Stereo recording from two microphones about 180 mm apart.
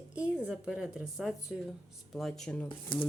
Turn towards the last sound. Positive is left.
turn(degrees=25)  # may be behind; listen again after turning